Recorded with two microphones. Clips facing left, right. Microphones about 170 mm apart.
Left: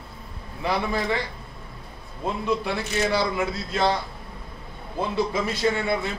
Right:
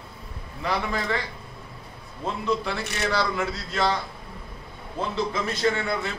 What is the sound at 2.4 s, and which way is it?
A man's voice, 15° left (ahead or behind).